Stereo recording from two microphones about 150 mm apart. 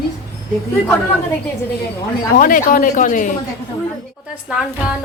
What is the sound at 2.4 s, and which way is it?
Speech, 70° left (ahead or behind).